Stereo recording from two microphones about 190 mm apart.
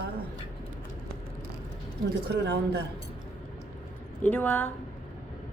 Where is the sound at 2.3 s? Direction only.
60° right (ahead or behind).